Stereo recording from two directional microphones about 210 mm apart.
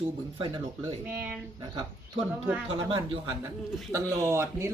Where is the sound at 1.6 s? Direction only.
20° right (ahead or behind).